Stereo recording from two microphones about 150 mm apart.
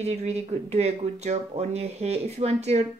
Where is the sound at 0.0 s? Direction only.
45° right (ahead or behind).